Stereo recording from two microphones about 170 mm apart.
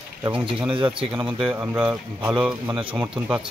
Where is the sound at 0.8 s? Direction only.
30° right (ahead or behind).